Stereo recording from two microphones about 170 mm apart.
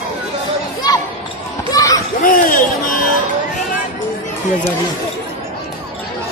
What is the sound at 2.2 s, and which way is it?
Speech, 50° left (ahead or behind).